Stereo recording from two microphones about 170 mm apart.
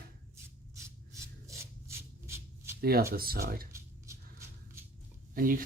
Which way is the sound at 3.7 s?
15° right (ahead or behind).